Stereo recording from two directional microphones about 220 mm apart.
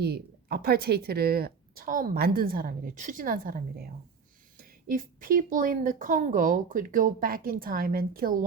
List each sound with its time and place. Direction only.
0.0 s speech: 45° right (ahead or behind)